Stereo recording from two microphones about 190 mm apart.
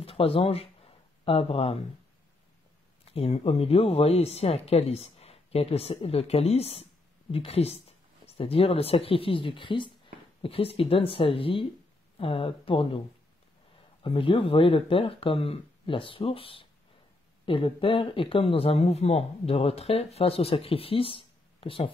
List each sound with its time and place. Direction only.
0.0 s speech: 30° left (ahead or behind)
3.1 s speech: 30° left (ahead or behind)
14.0 s speech: 25° left (ahead or behind)